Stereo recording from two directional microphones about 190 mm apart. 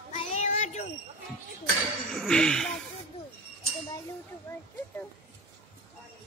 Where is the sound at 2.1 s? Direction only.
5° left (ahead or behind).